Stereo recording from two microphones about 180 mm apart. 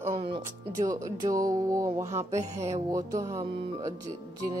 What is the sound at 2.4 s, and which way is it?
Music, 35° right (ahead or behind).